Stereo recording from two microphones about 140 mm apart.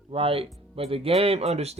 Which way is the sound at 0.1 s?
40° right (ahead or behind).